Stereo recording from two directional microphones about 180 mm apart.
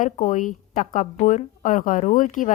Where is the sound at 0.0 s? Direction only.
45° left (ahead or behind).